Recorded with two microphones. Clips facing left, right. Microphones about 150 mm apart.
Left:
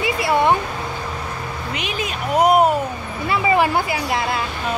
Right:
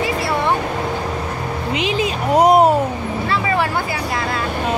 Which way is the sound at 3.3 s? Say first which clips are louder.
Left 3 dB; 20° left (ahead or behind).